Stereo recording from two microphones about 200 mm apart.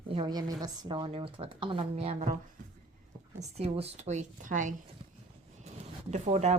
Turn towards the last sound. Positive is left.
turn(degrees=-35)  # may be behind; listen again after turning